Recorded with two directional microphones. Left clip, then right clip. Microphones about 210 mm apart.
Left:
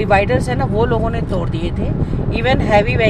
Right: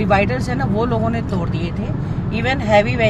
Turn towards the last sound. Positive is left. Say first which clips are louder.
# left 1 dB
turn(degrees=10)  # may be behind; listen again after turning